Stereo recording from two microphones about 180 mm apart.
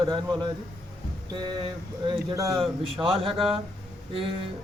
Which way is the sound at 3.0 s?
30° right (ahead or behind).